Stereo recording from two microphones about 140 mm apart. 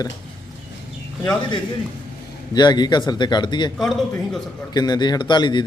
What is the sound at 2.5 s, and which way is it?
A man's voice, 30° left (ahead or behind).